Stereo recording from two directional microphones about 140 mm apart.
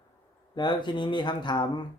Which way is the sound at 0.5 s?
30° left (ahead or behind).